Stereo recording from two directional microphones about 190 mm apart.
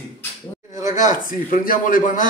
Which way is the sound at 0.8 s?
40° left (ahead or behind).